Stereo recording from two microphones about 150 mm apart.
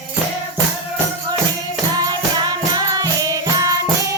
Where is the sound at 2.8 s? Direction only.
25° right (ahead or behind).